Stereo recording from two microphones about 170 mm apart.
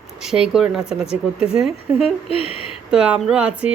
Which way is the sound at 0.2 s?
5° right (ahead or behind).